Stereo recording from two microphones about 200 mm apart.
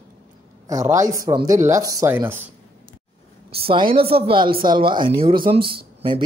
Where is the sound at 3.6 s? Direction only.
25° right (ahead or behind).